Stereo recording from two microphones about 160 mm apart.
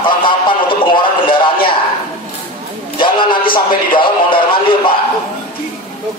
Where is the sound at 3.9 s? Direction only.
30° left (ahead or behind).